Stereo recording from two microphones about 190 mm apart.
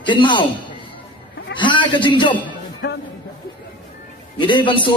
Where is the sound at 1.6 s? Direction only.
25° left (ahead or behind).